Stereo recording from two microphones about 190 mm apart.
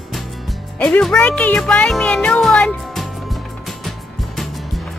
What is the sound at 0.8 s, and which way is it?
Speech, 5° left (ahead or behind).